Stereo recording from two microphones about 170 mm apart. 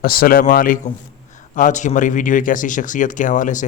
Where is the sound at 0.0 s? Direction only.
60° left (ahead or behind).